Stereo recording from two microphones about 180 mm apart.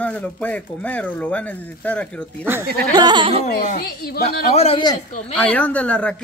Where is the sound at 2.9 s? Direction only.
25° right (ahead or behind).